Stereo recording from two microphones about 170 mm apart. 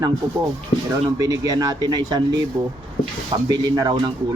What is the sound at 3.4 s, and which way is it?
Speech, 25° right (ahead or behind).